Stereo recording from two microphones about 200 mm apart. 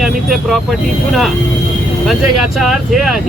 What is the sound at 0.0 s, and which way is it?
Speech, centre (ahead or behind).